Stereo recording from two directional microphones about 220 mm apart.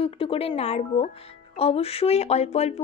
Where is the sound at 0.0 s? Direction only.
25° left (ahead or behind).